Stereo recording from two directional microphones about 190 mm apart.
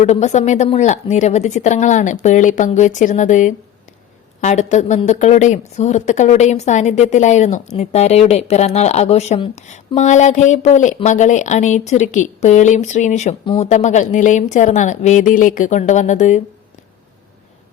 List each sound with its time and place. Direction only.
0.0 s a woman's voice: 35° left (ahead or behind)